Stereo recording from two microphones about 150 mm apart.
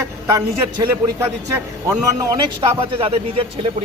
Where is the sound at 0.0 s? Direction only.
20° right (ahead or behind).